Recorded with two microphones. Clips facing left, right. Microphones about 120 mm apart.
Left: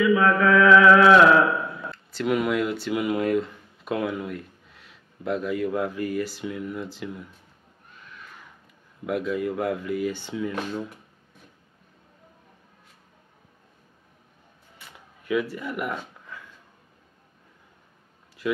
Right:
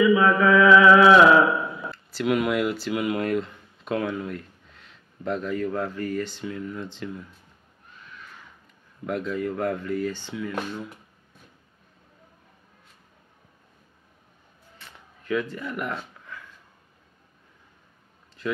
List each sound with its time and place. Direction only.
0.0 s mantra: 5° right (ahead or behind)
9.0 s speech: 5° left (ahead or behind)
10.3 s speech: 25° left (ahead or behind)
14.8 s a sound: 10° left (ahead or behind)